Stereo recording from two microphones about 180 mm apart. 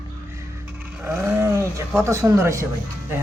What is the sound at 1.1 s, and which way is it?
Speech, 15° right (ahead or behind).